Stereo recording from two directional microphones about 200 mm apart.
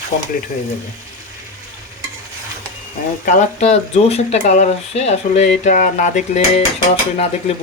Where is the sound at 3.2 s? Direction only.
40° left (ahead or behind).